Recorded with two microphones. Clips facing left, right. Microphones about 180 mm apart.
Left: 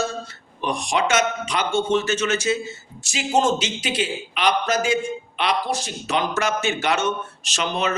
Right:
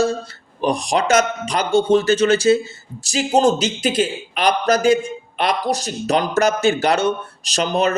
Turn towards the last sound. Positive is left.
turn(degrees=-40)  # may be behind; listen again after turning